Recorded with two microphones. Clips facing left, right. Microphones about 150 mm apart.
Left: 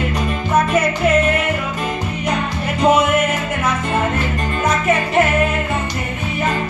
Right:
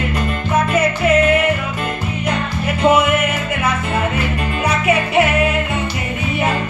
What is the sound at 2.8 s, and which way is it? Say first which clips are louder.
Music: even; 5° right (ahead or behind).